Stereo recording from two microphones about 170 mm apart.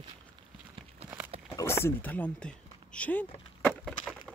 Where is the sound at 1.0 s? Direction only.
35° right (ahead or behind).